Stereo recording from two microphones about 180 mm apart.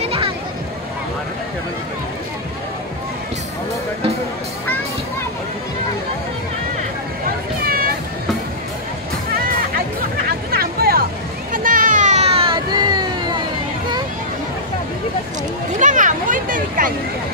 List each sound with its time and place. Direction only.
0.0 s music: 30° right (ahead or behind)
10.5 s vehicle: 55° right (ahead or behind); by 13.4 s 25° right (ahead or behind)
15.8 s a sound: 45° right (ahead or behind)